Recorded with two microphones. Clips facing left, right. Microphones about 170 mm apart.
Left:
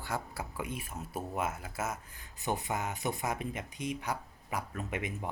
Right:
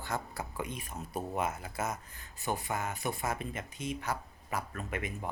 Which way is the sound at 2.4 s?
20° left (ahead or behind).